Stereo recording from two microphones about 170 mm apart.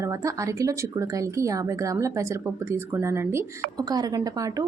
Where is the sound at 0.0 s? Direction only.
20° right (ahead or behind).